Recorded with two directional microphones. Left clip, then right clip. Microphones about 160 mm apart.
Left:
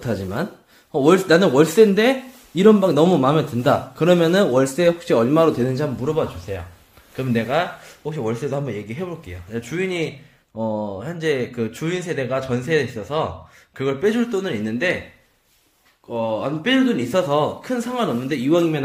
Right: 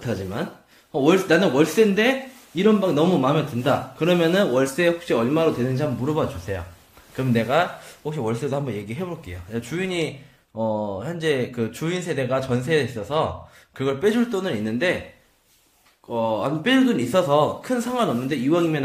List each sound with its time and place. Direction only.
0.0 s speech: 25° left (ahead or behind)
6.1 s speech: 5° right (ahead or behind)
16.1 s speech: centre (ahead or behind)
18.5 s speech: 20° left (ahead or behind)